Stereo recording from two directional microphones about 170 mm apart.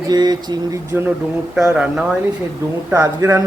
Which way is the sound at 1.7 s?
5° right (ahead or behind).